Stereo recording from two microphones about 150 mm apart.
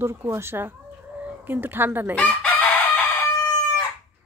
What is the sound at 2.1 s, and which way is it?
Chicken, 10° left (ahead or behind).